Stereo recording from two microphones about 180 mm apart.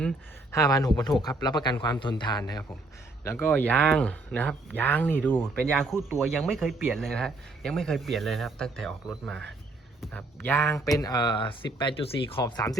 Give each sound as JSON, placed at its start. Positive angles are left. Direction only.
{"t": 0.5, "sound": "speech", "side_deg": 20}
{"t": 10.1, "sound": "speech", "side_deg": 10}